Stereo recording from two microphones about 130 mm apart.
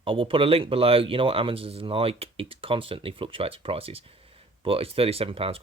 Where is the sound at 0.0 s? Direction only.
45° right (ahead or behind).